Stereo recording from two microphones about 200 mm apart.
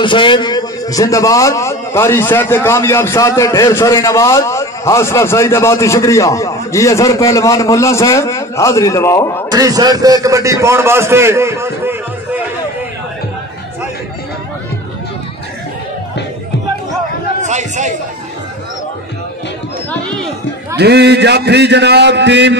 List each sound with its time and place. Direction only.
0.0 s a man's voice: 25° left (ahead or behind)
9.5 s a man's voice: 20° right (ahead or behind)
17.4 s a sound: 35° right (ahead or behind)
20.7 s a man's voice: 55° right (ahead or behind)